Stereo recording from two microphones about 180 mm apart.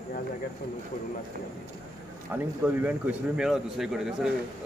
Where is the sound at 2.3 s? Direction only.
10° right (ahead or behind).